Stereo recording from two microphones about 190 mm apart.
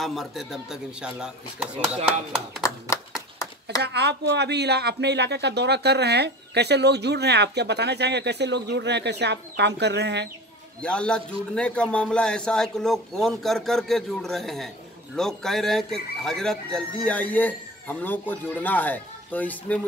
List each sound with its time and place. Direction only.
0.0 s a man's voice: centre (ahead or behind)
3.8 s speech: 60° right (ahead or behind)
10.8 s a man's voice: 5° left (ahead or behind)